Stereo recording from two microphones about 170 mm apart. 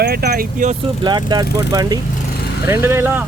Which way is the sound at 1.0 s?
25° right (ahead or behind).